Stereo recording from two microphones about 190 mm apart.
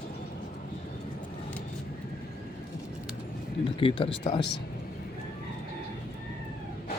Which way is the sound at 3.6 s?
25° left (ahead or behind).